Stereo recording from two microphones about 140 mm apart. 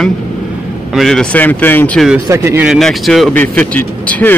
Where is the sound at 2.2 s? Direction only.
20° right (ahead or behind).